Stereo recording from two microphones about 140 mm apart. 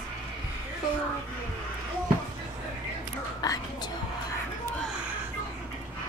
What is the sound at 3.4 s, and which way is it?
Whispering, 25° left (ahead or behind).